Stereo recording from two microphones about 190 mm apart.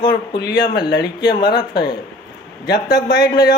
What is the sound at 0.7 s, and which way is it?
Speech, 55° left (ahead or behind).